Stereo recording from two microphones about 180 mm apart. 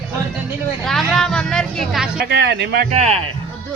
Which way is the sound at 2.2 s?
75° right (ahead or behind).